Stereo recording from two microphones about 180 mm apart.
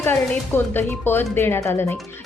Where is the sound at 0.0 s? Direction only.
10° left (ahead or behind).